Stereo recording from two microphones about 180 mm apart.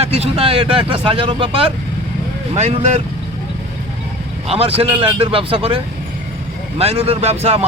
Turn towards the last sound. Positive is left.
turn(degrees=-35)  # may be behind; listen again after turning